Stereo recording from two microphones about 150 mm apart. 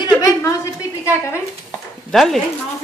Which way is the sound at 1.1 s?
20° left (ahead or behind).